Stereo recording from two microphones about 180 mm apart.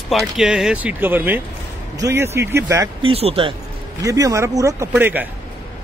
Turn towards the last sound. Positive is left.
turn(degrees=-10)  # may be behind; listen again after turning